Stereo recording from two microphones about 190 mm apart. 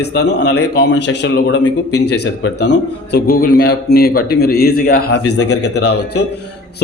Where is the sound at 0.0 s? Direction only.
60° left (ahead or behind).